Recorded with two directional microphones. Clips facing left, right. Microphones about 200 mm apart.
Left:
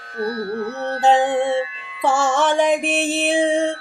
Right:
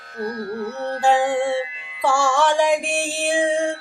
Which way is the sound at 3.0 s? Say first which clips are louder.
Left 3 dB; 20° left (ahead or behind).